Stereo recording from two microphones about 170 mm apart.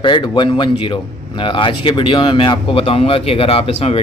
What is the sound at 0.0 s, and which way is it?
Speech, 25° left (ahead or behind).